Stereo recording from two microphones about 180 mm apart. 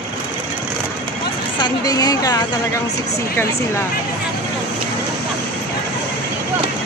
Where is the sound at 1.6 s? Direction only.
20° left (ahead or behind).